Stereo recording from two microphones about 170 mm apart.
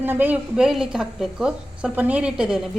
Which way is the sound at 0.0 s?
10° right (ahead or behind).